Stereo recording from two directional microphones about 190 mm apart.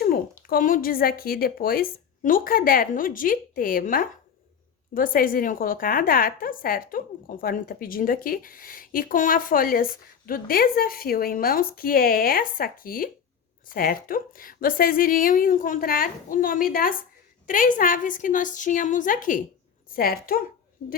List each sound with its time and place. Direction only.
0.0 s a woman's voice: 50° left (ahead or behind)